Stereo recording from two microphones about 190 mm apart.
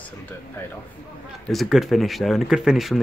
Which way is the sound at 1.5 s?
Centre (ahead or behind).